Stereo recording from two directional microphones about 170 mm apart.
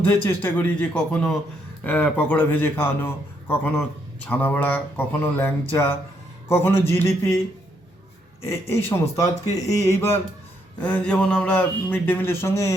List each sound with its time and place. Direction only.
0.0 s speech: 15° left (ahead or behind)
8.4 s speech: 15° left (ahead or behind)
10.8 s speech: 10° left (ahead or behind)